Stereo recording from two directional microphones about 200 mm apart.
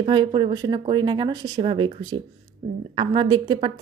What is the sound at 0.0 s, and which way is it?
A woman's voice, 25° right (ahead or behind).